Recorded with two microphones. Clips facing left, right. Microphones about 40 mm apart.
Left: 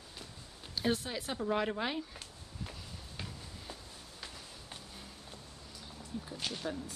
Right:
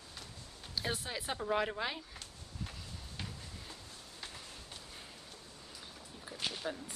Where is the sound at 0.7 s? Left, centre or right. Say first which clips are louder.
Left 4 dB; centre.